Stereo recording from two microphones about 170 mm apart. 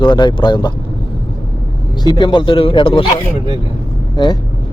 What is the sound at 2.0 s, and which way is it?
Speech, 25° left (ahead or behind).